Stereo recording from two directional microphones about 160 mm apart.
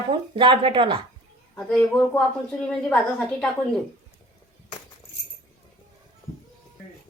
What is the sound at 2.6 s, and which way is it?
Speech, 5° left (ahead or behind).